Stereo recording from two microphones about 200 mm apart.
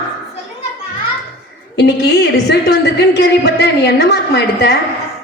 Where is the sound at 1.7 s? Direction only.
55° left (ahead or behind).